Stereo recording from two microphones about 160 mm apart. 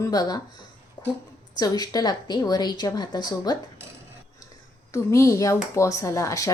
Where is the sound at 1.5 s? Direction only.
25° left (ahead or behind).